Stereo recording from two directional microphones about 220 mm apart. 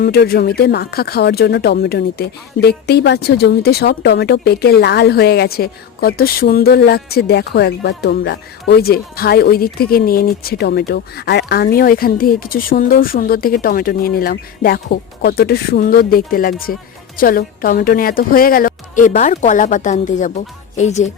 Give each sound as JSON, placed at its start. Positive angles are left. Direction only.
{"t": 0.0, "sound": "a woman's voice", "side_deg": 45}